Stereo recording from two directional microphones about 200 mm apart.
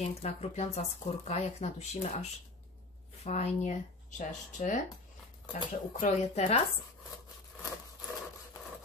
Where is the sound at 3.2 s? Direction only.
35° left (ahead or behind).